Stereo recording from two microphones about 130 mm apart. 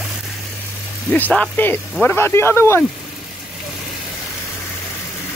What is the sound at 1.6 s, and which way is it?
Speech, 15° left (ahead or behind).